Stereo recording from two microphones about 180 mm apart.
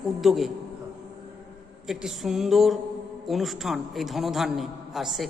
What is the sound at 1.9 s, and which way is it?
Speech, centre (ahead or behind).